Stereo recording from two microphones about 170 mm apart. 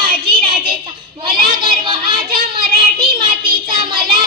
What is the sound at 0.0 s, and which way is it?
Child singing, 60° right (ahead or behind).